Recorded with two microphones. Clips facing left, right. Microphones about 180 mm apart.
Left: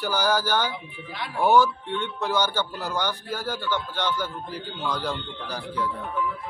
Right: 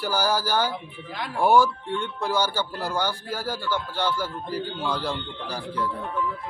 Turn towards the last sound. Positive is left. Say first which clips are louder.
# even
turn(degrees=10)  # may be behind; listen again after turning